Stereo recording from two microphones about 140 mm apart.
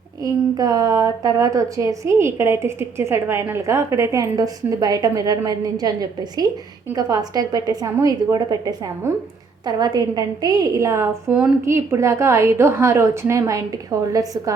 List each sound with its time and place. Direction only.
0.2 s speech: 30° right (ahead or behind)
11.3 s a woman's voice: 10° right (ahead or behind)
11.6 s speech: 20° right (ahead or behind)